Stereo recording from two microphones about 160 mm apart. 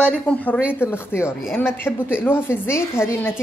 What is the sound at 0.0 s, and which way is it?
Speech, 5° left (ahead or behind).